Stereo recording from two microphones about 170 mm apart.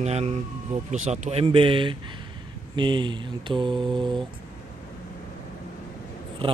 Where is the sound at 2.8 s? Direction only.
30° right (ahead or behind).